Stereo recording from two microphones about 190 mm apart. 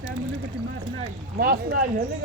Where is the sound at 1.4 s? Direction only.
50° right (ahead or behind).